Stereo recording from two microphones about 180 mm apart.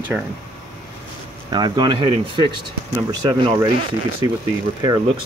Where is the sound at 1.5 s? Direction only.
25° right (ahead or behind).